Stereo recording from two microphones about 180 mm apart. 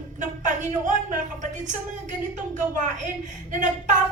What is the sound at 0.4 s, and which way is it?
A woman's voice, 45° right (ahead or behind).